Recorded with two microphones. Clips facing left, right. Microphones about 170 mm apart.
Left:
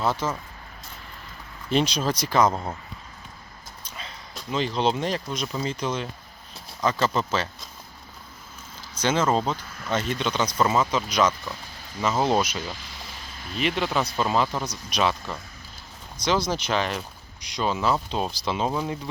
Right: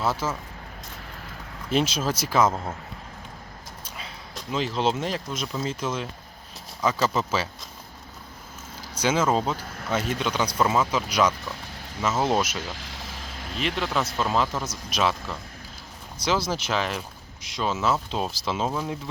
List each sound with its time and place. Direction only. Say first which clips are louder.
0.0 s speech: left 1 dB; 5° right (ahead or behind)
1.7 s speech: left 1 dB; 5° right (ahead or behind)
3.8 s dog: left 1 dB; 5° right (ahead or behind)
4.5 s speech: left 1 dB; 5° right (ahead or behind)
9.0 s speech: even; 10° right (ahead or behind)
9.6 s a sound: right 2 dB; 50° right (ahead or behind)
9.9 s speech: even; 5° right (ahead or behind)